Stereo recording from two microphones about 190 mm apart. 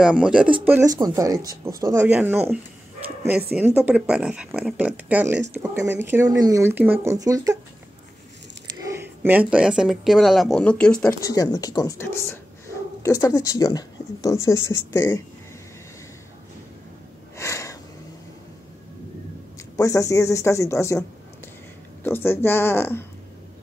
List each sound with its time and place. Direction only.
0.0 s speech: 5° right (ahead or behind)
8.9 s speech: 10° right (ahead or behind); by 11.1 s 5° left (ahead or behind)
11.2 s speech: 20° left (ahead or behind)
17.4 s a sound: 15° left (ahead or behind)
19.8 s speech: 15° left (ahead or behind)
22.0 s speech: 10° left (ahead or behind)